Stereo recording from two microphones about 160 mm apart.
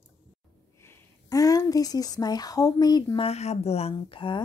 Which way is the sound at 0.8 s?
20° left (ahead or behind).